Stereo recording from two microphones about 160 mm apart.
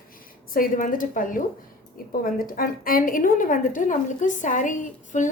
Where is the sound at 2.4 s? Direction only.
65° left (ahead or behind).